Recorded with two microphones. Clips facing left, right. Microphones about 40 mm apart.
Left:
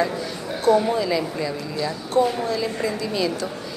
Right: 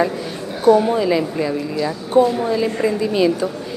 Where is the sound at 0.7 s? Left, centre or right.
Centre.